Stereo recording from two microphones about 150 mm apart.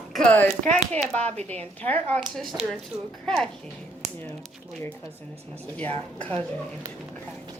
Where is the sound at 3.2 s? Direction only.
5° left (ahead or behind).